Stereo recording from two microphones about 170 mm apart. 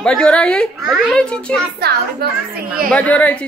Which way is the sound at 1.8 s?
70° right (ahead or behind).